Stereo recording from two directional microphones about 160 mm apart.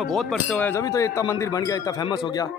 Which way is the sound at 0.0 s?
Centre (ahead or behind).